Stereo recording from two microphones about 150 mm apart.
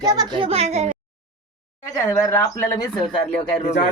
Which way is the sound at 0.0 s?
25° right (ahead or behind).